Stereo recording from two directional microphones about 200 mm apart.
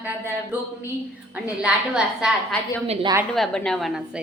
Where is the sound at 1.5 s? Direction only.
5° right (ahead or behind).